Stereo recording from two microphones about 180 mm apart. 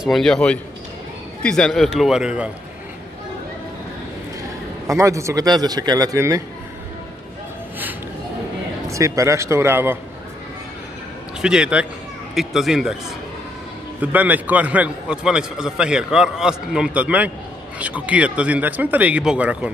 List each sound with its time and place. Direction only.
0.0 s a man's voice: centre (ahead or behind)
4.8 s speech: 15° right (ahead or behind)
8.8 s speech: 15° right (ahead or behind)
11.4 s a man's voice: 5° right (ahead or behind)
14.0 s a man's voice: 10° right (ahead or behind)